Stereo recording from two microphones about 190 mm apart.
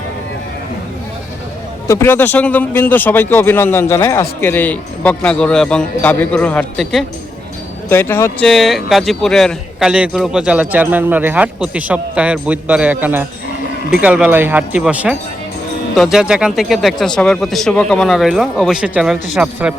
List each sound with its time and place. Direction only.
1.9 s a man's voice: 10° left (ahead or behind); by 19.7 s 5° right (ahead or behind)